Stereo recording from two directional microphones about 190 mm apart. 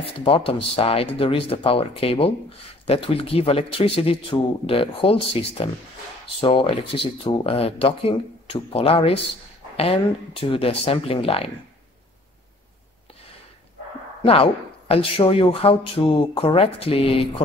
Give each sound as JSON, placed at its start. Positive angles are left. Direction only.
{"t": 0.0, "sound": "speech", "side_deg": 30}
{"t": 14.2, "sound": "speech", "side_deg": 30}